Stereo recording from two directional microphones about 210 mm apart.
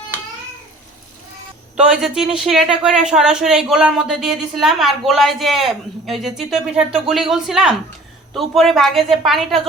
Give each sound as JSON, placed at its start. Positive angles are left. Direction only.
{"t": 1.7, "sound": "speech", "side_deg": -5}